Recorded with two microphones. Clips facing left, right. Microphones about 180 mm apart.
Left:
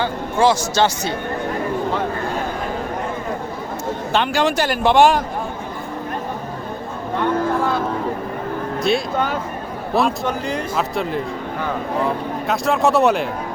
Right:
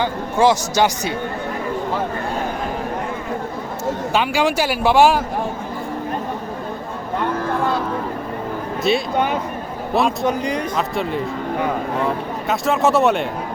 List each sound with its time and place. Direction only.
0.0 s speech: 15° right (ahead or behind)
4.1 s speech: 10° right (ahead or behind)
8.8 s speech: centre (ahead or behind)
12.5 s speech: centre (ahead or behind)